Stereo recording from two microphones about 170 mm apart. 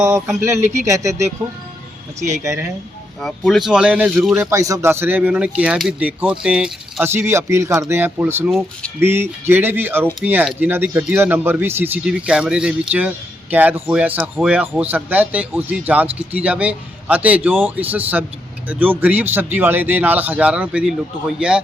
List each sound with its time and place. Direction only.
0.9 s speech: 20° right (ahead or behind)
3.2 s speech: 5° left (ahead or behind)
4.4 s speech: 20° right (ahead or behind)
8.4 s speech: centre (ahead or behind)
9.0 s speech: 15° right (ahead or behind)